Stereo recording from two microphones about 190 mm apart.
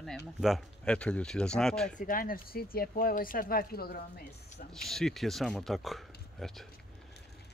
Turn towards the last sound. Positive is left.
turn(degrees=0)  # may be behind; listen again after turning